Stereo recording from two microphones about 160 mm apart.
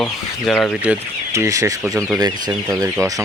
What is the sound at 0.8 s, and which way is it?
Speech, 20° right (ahead or behind).